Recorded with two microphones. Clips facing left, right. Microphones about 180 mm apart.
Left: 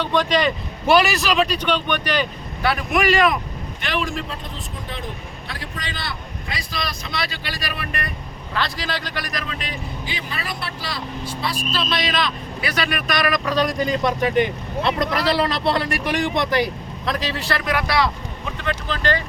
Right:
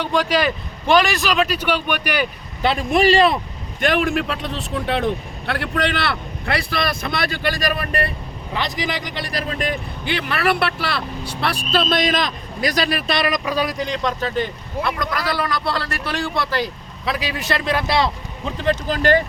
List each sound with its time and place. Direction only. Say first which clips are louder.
0.0 s speech: even; 10° right (ahead or behind)
0.9 s speech: even; 5° left (ahead or behind)
2.6 s speech: right 3 dB; 25° right (ahead or behind)
3.8 s speech: right 7 dB; 50° right (ahead or behind)
8.5 s speech: right 1 dB; 20° right (ahead or behind)
9.2 s speech: right 4 dB; 35° right (ahead or behind)
9.6 s speech: right 6 dB; 60° right (ahead or behind); by 13.4 s 25° right (ahead or behind)
13.4 s speech: left 1 dB; 10° right (ahead or behind); by 16.7 s 15° left (ahead or behind)
17.1 s speech: right 1 dB; 10° right (ahead or behind); by 19.2 s 45° right (ahead or behind)